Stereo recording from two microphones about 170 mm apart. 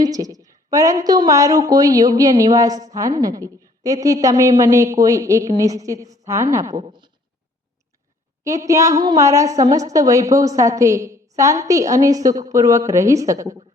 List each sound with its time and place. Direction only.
0.0 s a woman's voice: 20° right (ahead or behind)
6.8 s a sound: 25° right (ahead or behind)
8.4 s a woman's voice: 20° right (ahead or behind)